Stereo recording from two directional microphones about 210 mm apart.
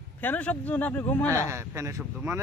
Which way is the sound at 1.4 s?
15° right (ahead or behind).